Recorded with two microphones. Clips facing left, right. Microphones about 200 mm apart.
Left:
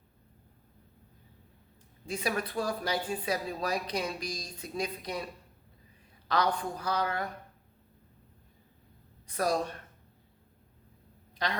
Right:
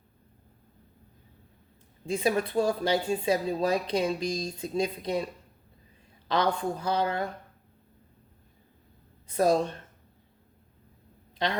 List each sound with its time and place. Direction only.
2.0 s speech: 25° right (ahead or behind)
9.2 s speech: 25° right (ahead or behind)
11.4 s speech: 25° right (ahead or behind)